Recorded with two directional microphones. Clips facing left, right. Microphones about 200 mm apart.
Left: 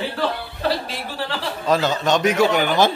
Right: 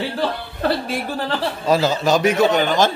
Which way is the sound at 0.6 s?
50° right (ahead or behind).